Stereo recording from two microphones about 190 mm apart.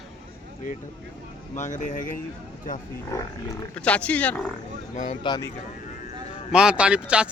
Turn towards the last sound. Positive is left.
turn(degrees=-5)  # may be behind; listen again after turning